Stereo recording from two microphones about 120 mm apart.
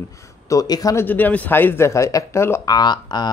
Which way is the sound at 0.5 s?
30° left (ahead or behind).